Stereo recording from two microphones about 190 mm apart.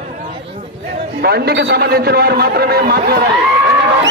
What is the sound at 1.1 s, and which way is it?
A man's voice, 55° right (ahead or behind).